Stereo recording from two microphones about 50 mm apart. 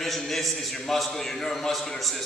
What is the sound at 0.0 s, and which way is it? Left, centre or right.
A man's voice, centre.